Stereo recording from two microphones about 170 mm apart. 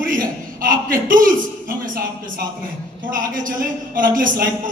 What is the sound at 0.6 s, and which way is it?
A man's voice, 55° right (ahead or behind).